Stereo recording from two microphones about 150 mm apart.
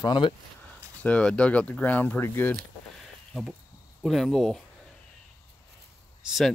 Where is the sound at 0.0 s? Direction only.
30° left (ahead or behind).